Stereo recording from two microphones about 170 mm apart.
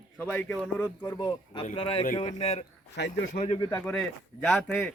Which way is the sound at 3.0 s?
90° left.